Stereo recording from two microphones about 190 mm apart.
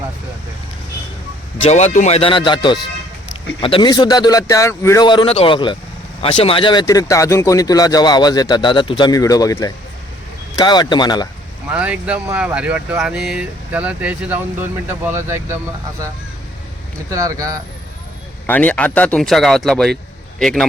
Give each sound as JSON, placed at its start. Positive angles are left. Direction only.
{"t": 1.5, "sound": "speech", "side_deg": 35}
{"t": 11.7, "sound": "speech", "side_deg": -5}
{"t": 17.1, "sound": "speech", "side_deg": -15}
{"t": 18.4, "sound": "speech", "side_deg": 10}